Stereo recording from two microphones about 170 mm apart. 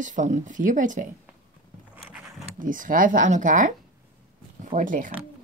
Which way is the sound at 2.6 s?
50° right (ahead or behind).